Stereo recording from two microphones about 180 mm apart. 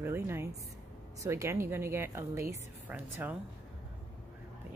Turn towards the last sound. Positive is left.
turn(degrees=-10)  # may be behind; listen again after turning